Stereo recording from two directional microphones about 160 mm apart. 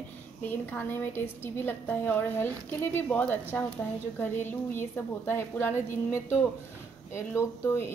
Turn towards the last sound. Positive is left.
turn(degrees=15)  # may be behind; listen again after turning